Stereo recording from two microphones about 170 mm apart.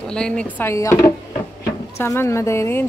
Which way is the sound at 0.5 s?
15° left (ahead or behind).